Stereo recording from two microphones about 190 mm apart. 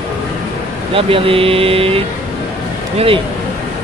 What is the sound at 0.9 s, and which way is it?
Speech, 30° right (ahead or behind).